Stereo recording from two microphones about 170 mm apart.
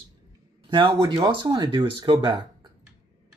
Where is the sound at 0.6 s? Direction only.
30° right (ahead or behind).